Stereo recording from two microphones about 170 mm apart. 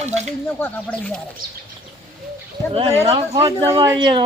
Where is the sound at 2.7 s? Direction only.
35° right (ahead or behind).